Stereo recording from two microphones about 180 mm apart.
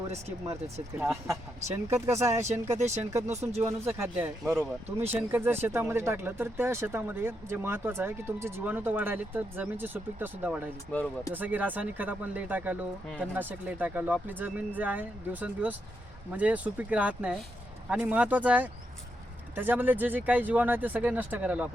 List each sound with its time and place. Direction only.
0.5 s speech: 10° right (ahead or behind)
2.7 s speech: 40° right (ahead or behind)
3.1 s speech: 15° right (ahead or behind)
10.9 s speech: 15° left (ahead or behind)
11.3 s speech: 10° right (ahead or behind)